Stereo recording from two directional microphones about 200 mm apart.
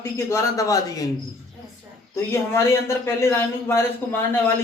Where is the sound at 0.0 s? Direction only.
15° left (ahead or behind).